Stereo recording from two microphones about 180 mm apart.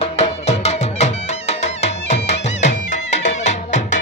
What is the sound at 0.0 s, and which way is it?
Music, 35° left (ahead or behind).